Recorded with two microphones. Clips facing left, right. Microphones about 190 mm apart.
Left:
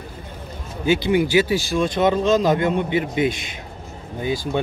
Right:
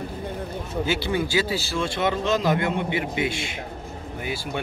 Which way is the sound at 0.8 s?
15° left (ahead or behind).